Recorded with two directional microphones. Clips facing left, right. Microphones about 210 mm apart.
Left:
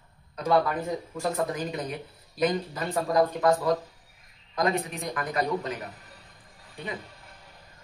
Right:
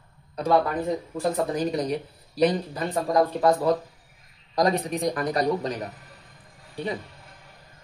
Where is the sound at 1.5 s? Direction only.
35° right (ahead or behind).